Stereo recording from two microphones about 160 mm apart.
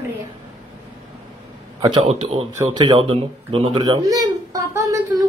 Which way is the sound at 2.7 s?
25° right (ahead or behind).